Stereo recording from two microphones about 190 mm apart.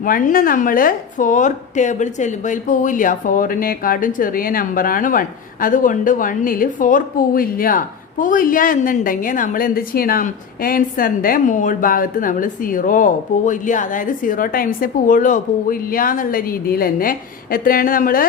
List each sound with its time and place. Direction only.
0.0 s a woman's voice: 45° left (ahead or behind)